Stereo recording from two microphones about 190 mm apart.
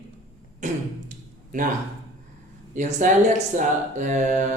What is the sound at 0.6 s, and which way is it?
Throat clearing, 45° right (ahead or behind).